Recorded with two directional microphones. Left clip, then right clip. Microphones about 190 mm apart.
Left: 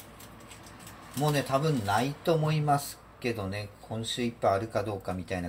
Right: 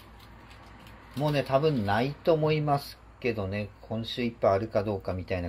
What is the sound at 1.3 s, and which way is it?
Speech, 40° right (ahead or behind).